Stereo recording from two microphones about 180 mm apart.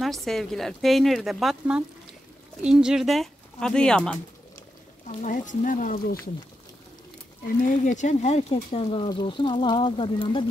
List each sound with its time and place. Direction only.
0.0 s speech: centre (ahead or behind)
5.0 s speech: 45° left (ahead or behind)
7.6 s speech: 45° left (ahead or behind); by 10.4 s 25° left (ahead or behind)